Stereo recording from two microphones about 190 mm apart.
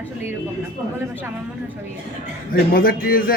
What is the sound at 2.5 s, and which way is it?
Speech, 50° left (ahead or behind).